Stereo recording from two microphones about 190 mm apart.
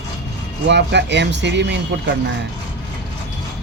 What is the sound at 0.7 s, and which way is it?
Speech, 65° right (ahead or behind).